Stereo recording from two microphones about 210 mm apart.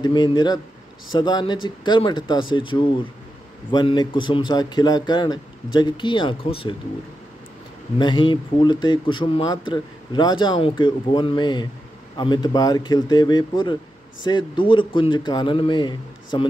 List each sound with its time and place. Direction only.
0.0 s speech: 20° left (ahead or behind)
8.0 s speech: 20° left (ahead or behind)